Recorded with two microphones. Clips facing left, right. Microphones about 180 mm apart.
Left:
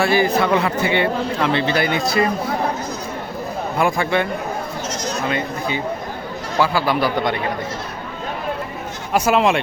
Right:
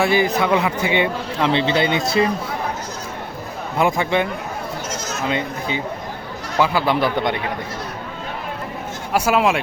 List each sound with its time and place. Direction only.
0.0 s speech: 15° right (ahead or behind)
3.8 s speech: 20° right (ahead or behind)
5.3 s speech: 20° right (ahead or behind)
9.1 s speech: 5° right (ahead or behind)